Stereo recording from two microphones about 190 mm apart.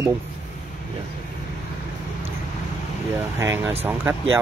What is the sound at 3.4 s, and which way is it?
Speech, 10° right (ahead or behind).